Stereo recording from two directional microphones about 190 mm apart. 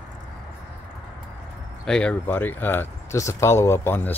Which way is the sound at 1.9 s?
5° left (ahead or behind).